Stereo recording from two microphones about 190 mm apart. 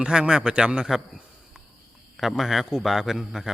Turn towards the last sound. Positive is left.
turn(degrees=0)  # may be behind; listen again after turning